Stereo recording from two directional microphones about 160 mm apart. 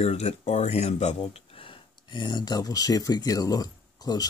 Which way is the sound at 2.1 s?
30° left (ahead or behind).